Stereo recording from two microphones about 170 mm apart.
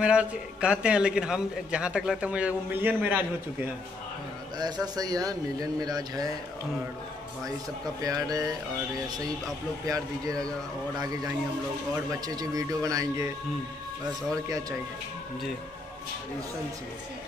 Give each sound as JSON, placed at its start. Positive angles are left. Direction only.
{"t": 0.0, "sound": "a man's voice", "side_deg": -5}
{"t": 4.6, "sound": "speech", "side_deg": -25}
{"t": 8.0, "sound": "speech", "side_deg": -20}
{"t": 9.8, "sound": "speech", "side_deg": -20}
{"t": 12.3, "sound": "speech", "side_deg": -20}